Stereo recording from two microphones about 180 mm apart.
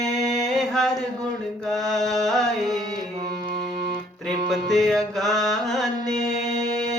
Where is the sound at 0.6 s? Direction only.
Centre (ahead or behind).